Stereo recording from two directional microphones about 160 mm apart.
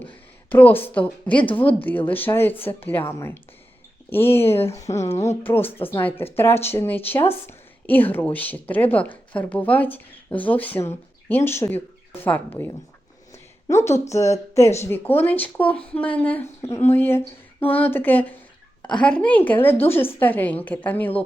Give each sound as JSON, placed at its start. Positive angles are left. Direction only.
{"t": 0.5, "sound": "a woman's voice", "side_deg": 10}
{"t": 13.3, "sound": "a sound", "side_deg": 15}
{"t": 14.1, "sound": "a woman's voice", "side_deg": 20}